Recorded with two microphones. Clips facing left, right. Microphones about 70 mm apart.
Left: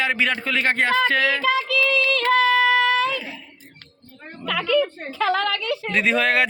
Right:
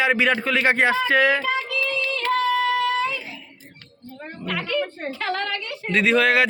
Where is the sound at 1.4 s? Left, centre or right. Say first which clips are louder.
Left 4 dB; left.